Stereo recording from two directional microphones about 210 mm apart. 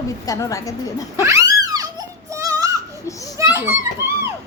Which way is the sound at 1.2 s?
15° right (ahead or behind).